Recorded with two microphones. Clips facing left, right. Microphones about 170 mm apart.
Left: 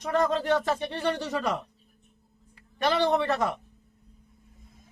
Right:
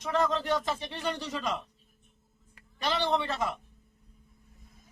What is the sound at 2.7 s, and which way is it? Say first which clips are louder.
Speech: left 5 dB; 55° left (ahead or behind).